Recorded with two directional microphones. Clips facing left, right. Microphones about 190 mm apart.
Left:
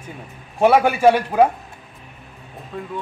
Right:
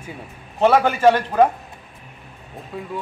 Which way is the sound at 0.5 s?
10° left (ahead or behind).